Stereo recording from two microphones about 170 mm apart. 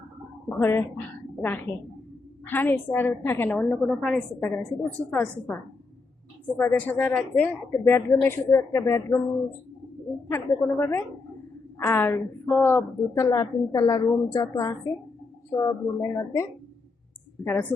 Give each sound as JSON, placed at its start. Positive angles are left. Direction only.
{"t": 0.4, "sound": "a woman's voice", "side_deg": 15}
{"t": 6.6, "sound": "a woman's voice", "side_deg": 10}